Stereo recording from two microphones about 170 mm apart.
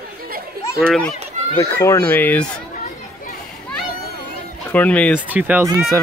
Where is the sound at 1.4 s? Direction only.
45° right (ahead or behind).